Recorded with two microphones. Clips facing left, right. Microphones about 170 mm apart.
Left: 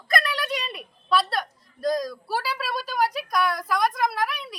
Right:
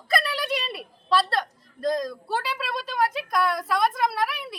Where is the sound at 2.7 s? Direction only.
25° right (ahead or behind).